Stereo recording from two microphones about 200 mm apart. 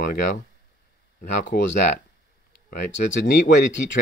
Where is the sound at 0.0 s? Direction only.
45° left (ahead or behind).